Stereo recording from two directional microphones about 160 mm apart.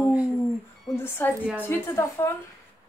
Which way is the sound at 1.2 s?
15° left (ahead or behind).